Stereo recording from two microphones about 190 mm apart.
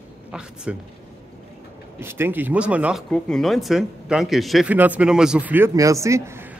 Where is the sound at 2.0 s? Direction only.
10° right (ahead or behind).